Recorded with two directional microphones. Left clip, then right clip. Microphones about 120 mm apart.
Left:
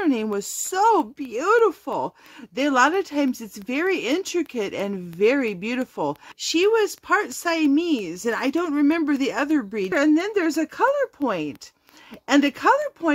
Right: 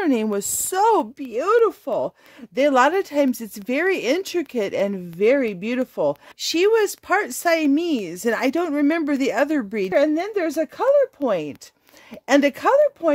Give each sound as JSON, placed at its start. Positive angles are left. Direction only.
{"t": 0.0, "sound": "speech", "side_deg": -55}
{"t": 6.4, "sound": "speech", "side_deg": -65}
{"t": 9.9, "sound": "speech", "side_deg": -30}
{"t": 12.3, "sound": "speech", "side_deg": -50}